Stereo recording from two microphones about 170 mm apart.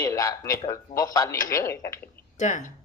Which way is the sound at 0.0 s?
20° left (ahead or behind).